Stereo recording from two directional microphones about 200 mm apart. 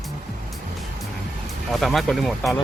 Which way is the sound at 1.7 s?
Centre (ahead or behind).